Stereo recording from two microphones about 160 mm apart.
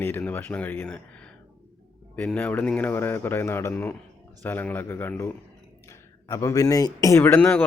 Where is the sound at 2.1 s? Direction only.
10° left (ahead or behind).